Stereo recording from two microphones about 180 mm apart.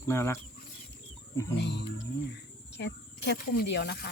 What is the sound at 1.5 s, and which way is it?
Speech, 70° left (ahead or behind).